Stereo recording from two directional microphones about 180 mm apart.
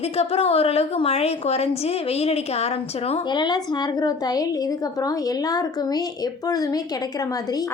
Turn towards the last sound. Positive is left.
turn(degrees=20)  # may be behind; listen again after turning